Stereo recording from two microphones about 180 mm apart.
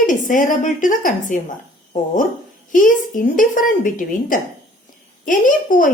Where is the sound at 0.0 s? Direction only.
45° left (ahead or behind).